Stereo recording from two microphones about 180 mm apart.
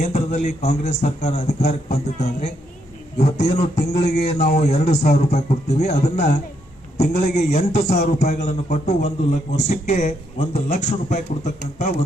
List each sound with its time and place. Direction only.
0.0 s a man's voice: 40° left (ahead or behind)
6.9 s a man's voice: 65° left (ahead or behind)
7.5 s a man's voice: 40° left (ahead or behind)